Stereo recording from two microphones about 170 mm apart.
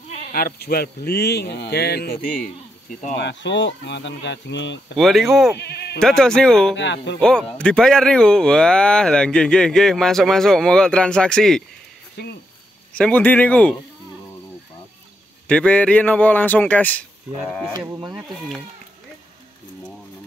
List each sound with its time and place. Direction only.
0.3 s speech: 60° left (ahead or behind)
3.2 s speech: 90° left
4.9 s speech: centre (ahead or behind)
6.7 s speech: 90° left
7.2 s speech: 5° left (ahead or behind)
12.2 s speech: 80° left
12.9 s a man's voice: 10° left (ahead or behind)
15.4 s a man's voice: 5° left (ahead or behind)
17.7 s speech: 25° right (ahead or behind)